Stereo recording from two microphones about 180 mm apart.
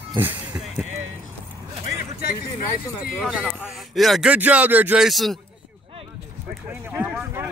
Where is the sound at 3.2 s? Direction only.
5° right (ahead or behind).